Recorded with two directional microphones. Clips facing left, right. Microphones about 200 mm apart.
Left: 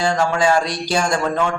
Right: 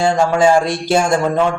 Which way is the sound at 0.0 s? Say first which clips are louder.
Right 5 dB; 25° right (ahead or behind).